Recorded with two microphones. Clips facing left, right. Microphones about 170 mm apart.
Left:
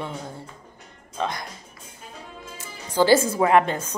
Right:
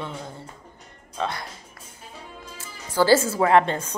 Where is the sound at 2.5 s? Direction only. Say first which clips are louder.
Left 1 dB; 15° left (ahead or behind).